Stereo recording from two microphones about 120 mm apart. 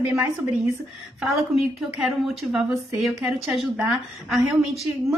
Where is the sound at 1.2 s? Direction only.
Centre (ahead or behind).